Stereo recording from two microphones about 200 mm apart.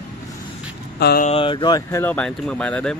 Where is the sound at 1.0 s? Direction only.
50° left (ahead or behind).